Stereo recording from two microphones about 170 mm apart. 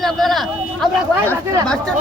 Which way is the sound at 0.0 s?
Centre (ahead or behind).